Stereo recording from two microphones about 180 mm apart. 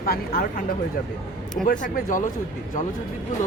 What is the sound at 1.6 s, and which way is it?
Speech, 50° left (ahead or behind).